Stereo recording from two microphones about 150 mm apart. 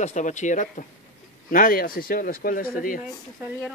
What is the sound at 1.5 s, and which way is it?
Speech, 70° left (ahead or behind).